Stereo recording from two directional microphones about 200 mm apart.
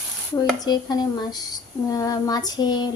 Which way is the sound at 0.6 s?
20° left (ahead or behind).